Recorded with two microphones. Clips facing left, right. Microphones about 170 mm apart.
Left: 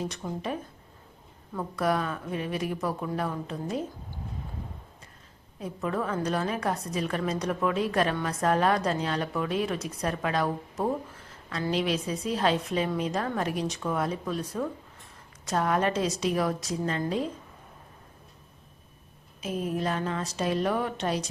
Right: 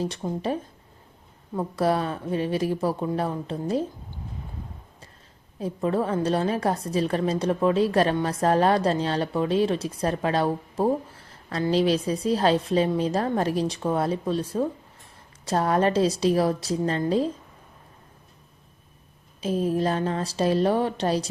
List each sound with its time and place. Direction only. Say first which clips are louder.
0.0 s a woman's voice: right 5 dB; 30° right (ahead or behind)
5.5 s a woman's voice: right 6 dB; 30° right (ahead or behind)
19.4 s a woman's voice: right 6 dB; 30° right (ahead or behind)